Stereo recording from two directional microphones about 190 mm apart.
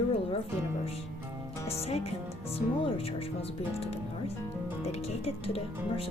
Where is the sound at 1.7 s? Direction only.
35° left (ahead or behind).